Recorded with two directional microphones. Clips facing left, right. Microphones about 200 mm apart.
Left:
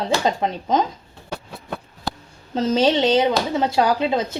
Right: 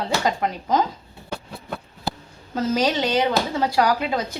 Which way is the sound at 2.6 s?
25° left (ahead or behind).